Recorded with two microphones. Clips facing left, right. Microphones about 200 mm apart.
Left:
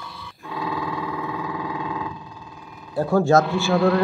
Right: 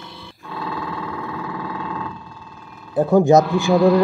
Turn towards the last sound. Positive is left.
turn(degrees=-15)  # may be behind; listen again after turning